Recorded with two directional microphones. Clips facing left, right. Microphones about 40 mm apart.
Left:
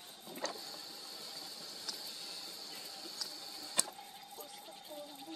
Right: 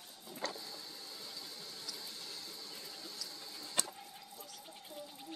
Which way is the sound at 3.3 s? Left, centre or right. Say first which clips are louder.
Right 1 dB; right.